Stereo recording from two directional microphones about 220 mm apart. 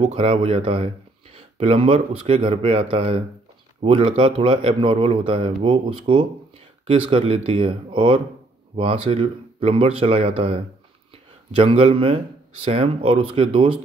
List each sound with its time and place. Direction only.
0.1 s speech: 25° right (ahead or behind)